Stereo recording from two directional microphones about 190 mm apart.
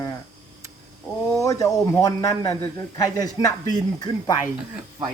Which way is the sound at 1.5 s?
15° left (ahead or behind).